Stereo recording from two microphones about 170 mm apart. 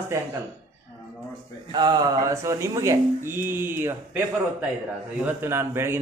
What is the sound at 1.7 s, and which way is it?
Speech, 25° right (ahead or behind).